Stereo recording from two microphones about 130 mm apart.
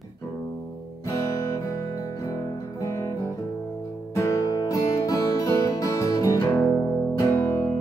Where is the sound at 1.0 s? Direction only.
25° left (ahead or behind).